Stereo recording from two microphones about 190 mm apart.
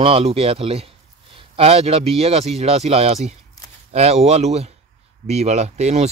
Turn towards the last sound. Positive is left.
turn(degrees=-35)  # may be behind; listen again after turning